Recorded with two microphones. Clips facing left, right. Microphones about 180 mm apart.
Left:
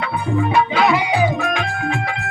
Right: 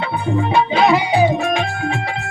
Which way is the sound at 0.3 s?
30° right (ahead or behind).